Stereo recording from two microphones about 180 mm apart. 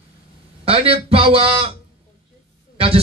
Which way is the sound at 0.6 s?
30° right (ahead or behind).